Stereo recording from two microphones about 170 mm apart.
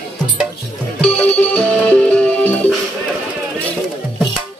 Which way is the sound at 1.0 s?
5° left (ahead or behind).